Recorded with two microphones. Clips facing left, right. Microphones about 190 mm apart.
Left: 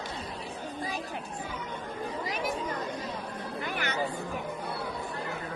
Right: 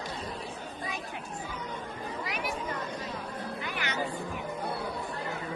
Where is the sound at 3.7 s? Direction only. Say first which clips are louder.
Left 5 dB; 45° left (ahead or behind).